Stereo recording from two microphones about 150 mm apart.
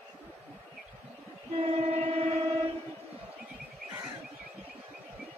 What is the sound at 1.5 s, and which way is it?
Train, 45° right (ahead or behind).